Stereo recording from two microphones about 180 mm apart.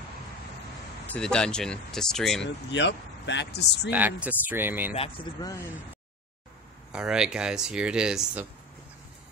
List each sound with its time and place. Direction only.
1.0 s speech: 5° left (ahead or behind)
2.4 s speech: 80° left
3.9 s speech: 10° right (ahead or behind)
4.9 s speech: 30° left (ahead or behind)
5.4 s speech: 15° left (ahead or behind)
6.9 s speech: 5° right (ahead or behind)